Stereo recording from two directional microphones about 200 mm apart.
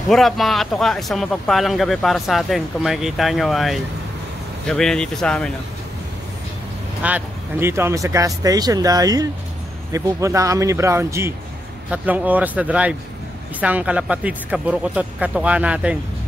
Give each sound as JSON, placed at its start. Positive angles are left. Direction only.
{"t": 0.1, "sound": "speech", "side_deg": 0}
{"t": 7.0, "sound": "speech", "side_deg": -10}